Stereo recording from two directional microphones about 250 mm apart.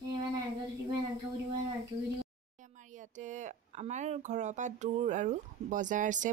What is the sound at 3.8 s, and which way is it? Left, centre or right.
Speech, right.